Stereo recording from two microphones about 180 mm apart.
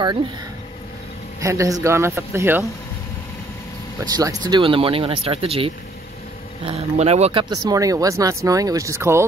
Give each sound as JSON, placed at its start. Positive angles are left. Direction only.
{"t": 1.4, "sound": "speech", "side_deg": -15}
{"t": 4.0, "sound": "speech", "side_deg": -20}
{"t": 7.5, "sound": "speech", "side_deg": -20}